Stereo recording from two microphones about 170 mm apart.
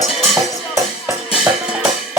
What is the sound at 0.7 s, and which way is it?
Music, 10° right (ahead or behind).